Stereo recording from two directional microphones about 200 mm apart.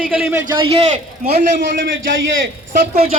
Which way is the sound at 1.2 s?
45° right (ahead or behind).